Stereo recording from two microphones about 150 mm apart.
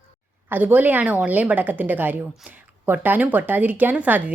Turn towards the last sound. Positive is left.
turn(degrees=-10)  # may be behind; listen again after turning